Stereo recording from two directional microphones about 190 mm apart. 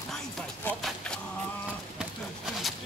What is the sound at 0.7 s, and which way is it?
Music, 5° left (ahead or behind).